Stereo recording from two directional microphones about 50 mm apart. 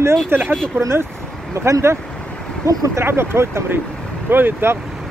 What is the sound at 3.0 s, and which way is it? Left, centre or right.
Speech, right.